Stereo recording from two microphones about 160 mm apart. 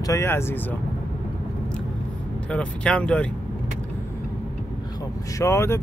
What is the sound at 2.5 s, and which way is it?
Speech, 5° left (ahead or behind).